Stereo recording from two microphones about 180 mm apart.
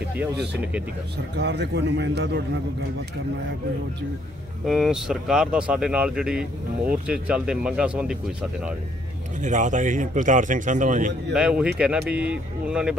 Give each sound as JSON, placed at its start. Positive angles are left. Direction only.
{"t": 1.1, "sound": "a man's voice", "side_deg": -70}
{"t": 4.6, "sound": "speech", "side_deg": 0}
{"t": 9.4, "sound": "a man's voice", "side_deg": -45}
{"t": 11.3, "sound": "speech", "side_deg": -5}